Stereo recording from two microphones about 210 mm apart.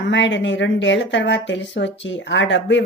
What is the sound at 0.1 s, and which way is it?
A woman's voice, 60° left (ahead or behind).